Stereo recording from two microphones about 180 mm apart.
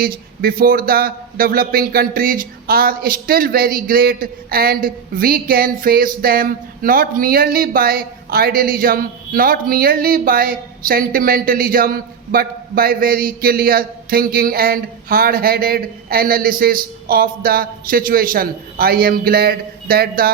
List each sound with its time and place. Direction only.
0.0 s a man's voice: 55° right (ahead or behind)